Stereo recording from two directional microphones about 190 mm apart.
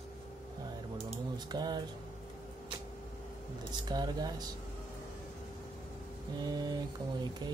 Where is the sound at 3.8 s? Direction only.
20° right (ahead or behind).